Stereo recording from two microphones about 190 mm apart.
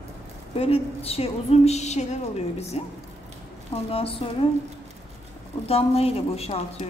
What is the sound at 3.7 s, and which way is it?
Music, 30° left (ahead or behind).